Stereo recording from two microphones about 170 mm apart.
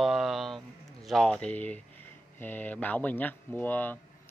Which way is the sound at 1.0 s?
5° left (ahead or behind).